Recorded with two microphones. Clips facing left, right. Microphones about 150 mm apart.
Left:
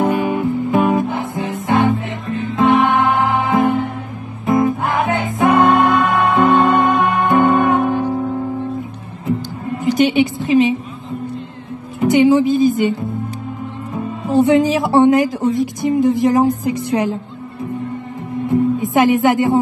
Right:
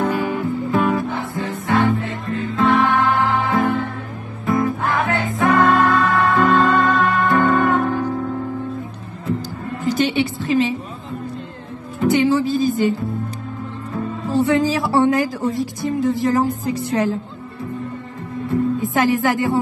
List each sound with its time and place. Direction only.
0.0 s music: 20° left (ahead or behind)
9.8 s a sound: 20° left (ahead or behind)
12.0 s music: 15° left (ahead or behind)
13.9 s a woman's voice: 20° left (ahead or behind)
18.5 s a woman's voice: 20° left (ahead or behind)